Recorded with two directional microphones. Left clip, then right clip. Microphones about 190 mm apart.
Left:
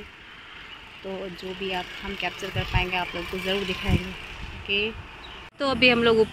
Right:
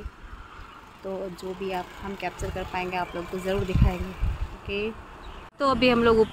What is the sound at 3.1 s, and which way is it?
Speech, 55° right (ahead or behind).